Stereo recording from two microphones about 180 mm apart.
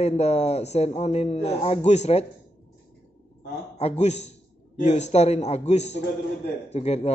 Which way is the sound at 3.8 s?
35° left (ahead or behind).